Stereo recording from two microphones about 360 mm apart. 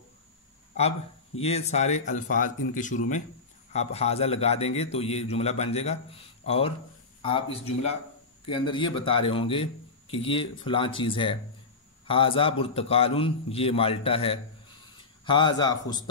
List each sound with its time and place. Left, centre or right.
0.7 s a man's voice: centre